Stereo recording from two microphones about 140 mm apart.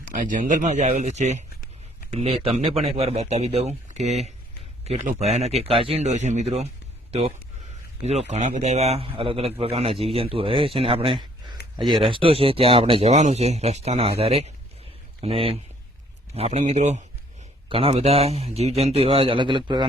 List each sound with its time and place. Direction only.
0.0 s a man's voice: 70° right (ahead or behind); by 17.0 s 55° right (ahead or behind)
17.7 s a man's voice: 40° right (ahead or behind)